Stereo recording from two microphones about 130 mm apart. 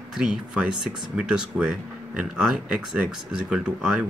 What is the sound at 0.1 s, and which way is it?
Speech, 5° right (ahead or behind).